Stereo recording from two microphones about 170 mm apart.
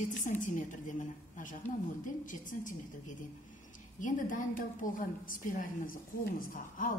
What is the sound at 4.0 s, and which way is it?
A woman's voice, 50° left (ahead or behind).